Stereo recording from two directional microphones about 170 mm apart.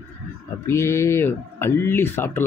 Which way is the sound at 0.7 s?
15° left (ahead or behind).